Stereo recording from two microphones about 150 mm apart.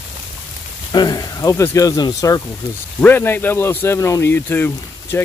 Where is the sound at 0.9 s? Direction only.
25° left (ahead or behind).